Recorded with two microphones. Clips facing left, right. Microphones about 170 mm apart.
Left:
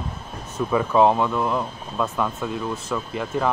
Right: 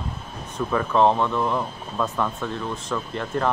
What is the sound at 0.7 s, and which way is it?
Speech, 10° left (ahead or behind).